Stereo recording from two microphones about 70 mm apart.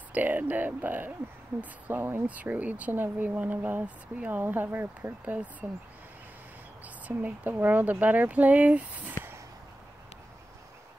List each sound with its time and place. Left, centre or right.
0.1 s speech: right
2.2 s speech: right
7.1 s speech: right